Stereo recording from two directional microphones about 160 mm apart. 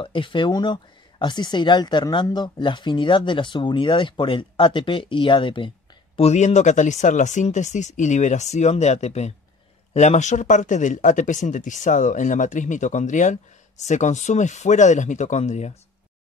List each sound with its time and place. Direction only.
0.0 s speech: 30° left (ahead or behind)
6.1 s speech: 40° left (ahead or behind)